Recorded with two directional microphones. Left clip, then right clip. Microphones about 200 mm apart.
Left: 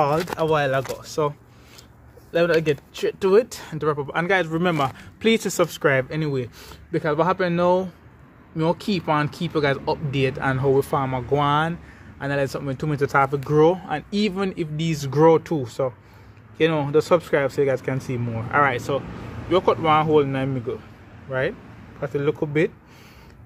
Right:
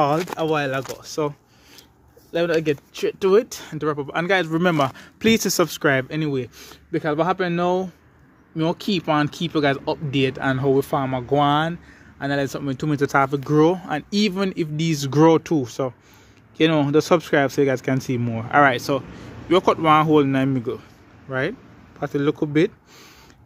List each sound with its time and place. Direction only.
0.4 s speech: 35° right (ahead or behind)
2.3 s speech: 30° right (ahead or behind); by 22.7 s 50° right (ahead or behind)